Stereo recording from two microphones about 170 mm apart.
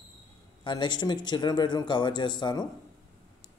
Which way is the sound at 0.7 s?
25° left (ahead or behind).